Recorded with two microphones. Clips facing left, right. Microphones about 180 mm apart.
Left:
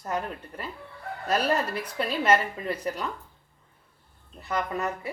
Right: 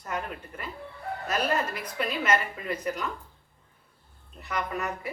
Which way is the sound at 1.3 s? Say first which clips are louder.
Left 3 dB; 35° left (ahead or behind).